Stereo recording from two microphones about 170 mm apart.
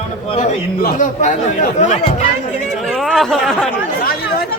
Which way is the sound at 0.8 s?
50° left (ahead or behind).